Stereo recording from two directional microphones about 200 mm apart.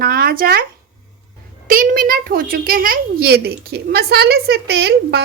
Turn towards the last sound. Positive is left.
turn(degrees=-55)  # may be behind; listen again after turning